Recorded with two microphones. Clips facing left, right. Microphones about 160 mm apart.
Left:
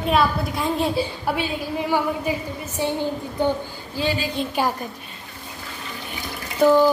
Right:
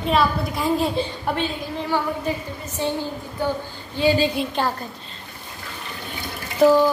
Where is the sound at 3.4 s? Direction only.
20° left (ahead or behind).